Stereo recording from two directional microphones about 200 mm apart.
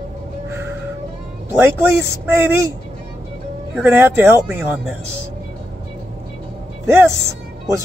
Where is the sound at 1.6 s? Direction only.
10° right (ahead or behind).